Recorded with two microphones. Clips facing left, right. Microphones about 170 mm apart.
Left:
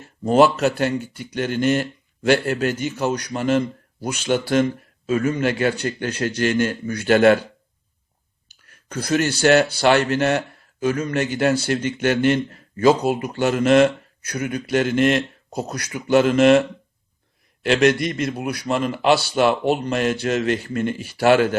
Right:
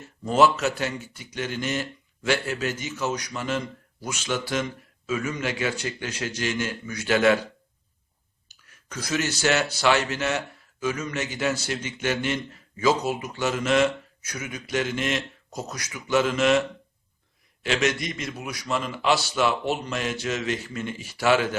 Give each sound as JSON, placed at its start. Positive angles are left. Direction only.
{"t": 0.3, "sound": "speech", "side_deg": 55}
{"t": 8.9, "sound": "speech", "side_deg": 55}